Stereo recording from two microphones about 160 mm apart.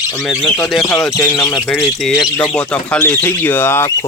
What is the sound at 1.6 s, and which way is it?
Speech, 5° left (ahead or behind).